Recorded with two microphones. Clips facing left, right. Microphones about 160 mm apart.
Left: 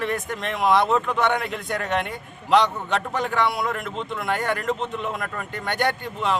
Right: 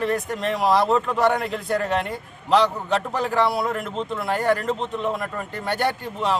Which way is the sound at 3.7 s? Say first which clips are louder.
Right 2 dB; 35° right (ahead or behind).